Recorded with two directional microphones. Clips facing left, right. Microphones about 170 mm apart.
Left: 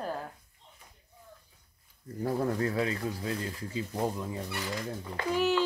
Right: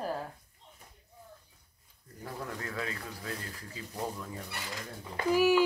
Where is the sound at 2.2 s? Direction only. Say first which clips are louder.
Left 11 dB; 35° left (ahead or behind).